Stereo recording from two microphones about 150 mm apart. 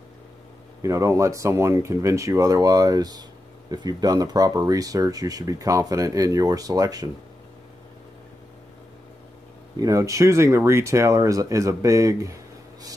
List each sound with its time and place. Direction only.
0.8 s speech: 20° right (ahead or behind)
9.8 s speech: 20° right (ahead or behind)